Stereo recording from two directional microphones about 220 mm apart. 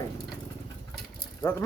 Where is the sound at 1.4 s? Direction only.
10° left (ahead or behind).